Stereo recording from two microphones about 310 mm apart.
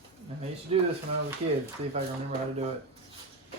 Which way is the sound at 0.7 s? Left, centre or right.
Centre.